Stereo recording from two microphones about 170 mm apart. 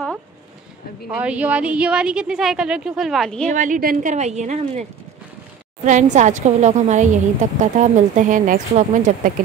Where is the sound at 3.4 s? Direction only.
50° right (ahead or behind).